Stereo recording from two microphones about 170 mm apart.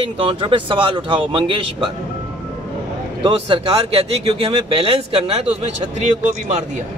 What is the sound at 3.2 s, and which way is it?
Speech, 30° right (ahead or behind).